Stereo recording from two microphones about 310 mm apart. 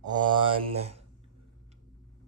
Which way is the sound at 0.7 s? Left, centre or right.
Centre.